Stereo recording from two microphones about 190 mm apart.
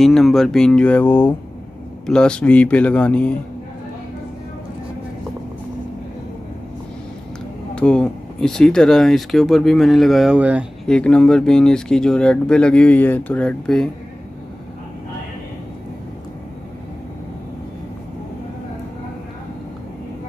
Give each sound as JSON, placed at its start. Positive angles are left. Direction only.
{"t": 0.0, "sound": "speech", "side_deg": 0}
{"t": 7.7, "sound": "speech", "side_deg": 5}
{"t": 10.9, "sound": "speech", "side_deg": 5}